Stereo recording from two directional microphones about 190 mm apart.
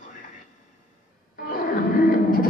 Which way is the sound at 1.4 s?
50° left (ahead or behind).